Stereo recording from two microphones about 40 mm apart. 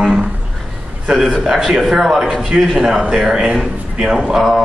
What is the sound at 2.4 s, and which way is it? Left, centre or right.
Speech, centre.